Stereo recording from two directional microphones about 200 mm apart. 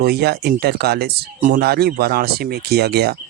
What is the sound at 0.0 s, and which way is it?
Speech, 50° right (ahead or behind).